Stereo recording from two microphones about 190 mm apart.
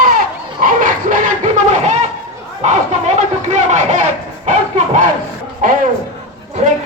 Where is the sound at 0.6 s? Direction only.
45° right (ahead or behind).